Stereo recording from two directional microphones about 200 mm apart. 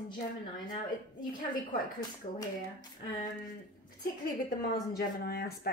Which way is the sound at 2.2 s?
40° left (ahead or behind).